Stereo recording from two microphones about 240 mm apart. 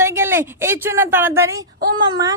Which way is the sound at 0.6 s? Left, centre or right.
Centre.